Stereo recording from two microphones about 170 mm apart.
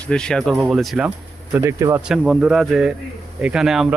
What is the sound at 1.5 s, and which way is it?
Speech, 20° right (ahead or behind).